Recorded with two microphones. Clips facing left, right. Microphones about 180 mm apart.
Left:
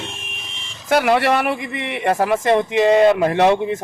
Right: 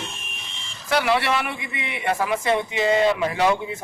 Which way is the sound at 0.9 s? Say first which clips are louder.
Left 5 dB; 50° left (ahead or behind).